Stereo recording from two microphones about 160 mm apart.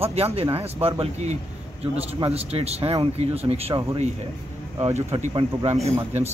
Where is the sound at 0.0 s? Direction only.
40° right (ahead or behind).